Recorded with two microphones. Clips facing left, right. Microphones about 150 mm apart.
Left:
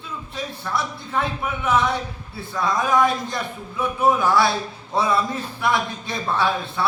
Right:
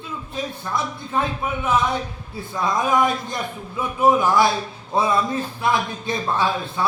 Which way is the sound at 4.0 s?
20° right (ahead or behind).